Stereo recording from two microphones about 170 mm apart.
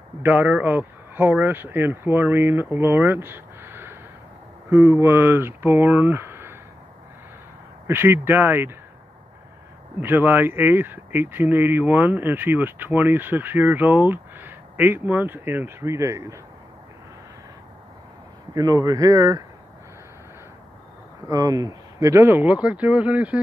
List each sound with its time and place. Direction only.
0.2 s speech: 10° right (ahead or behind)
7.8 s speech: 15° right (ahead or behind)
9.9 s speech: 10° right (ahead or behind)
18.5 s speech: 20° right (ahead or behind)
21.3 s speech: 20° right (ahead or behind)